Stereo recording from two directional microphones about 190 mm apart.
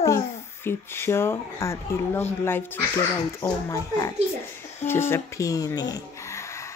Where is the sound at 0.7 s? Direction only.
10° left (ahead or behind).